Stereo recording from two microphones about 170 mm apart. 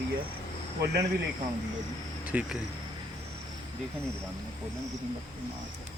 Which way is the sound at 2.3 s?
10° right (ahead or behind).